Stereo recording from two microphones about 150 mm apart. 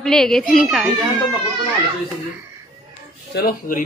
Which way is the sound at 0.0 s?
5° left (ahead or behind).